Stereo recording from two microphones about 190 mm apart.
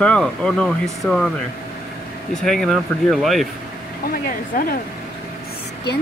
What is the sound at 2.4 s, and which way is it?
Speech, centre (ahead or behind).